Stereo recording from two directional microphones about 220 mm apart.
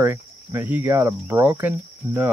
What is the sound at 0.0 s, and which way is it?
Speech, 10° right (ahead or behind).